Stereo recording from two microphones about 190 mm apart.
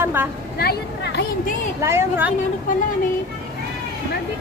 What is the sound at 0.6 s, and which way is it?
Speech, 60° left (ahead or behind).